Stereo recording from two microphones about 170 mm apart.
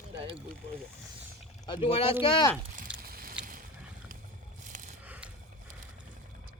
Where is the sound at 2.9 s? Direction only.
60° right (ahead or behind).